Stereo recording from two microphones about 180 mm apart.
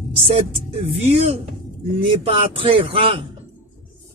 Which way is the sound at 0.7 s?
30° right (ahead or behind).